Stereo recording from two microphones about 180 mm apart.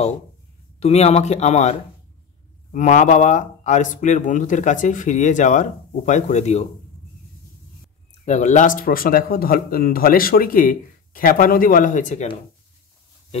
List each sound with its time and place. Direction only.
0.7 s speech: 35° left (ahead or behind)
8.3 s speech: 40° left (ahead or behind)